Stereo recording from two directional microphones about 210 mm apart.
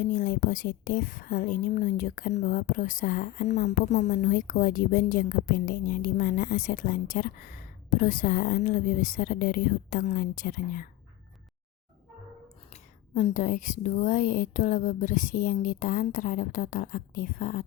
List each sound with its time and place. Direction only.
0.0 s a woman's voice: 40° left (ahead or behind)
12.7 s a woman's voice: 35° left (ahead or behind)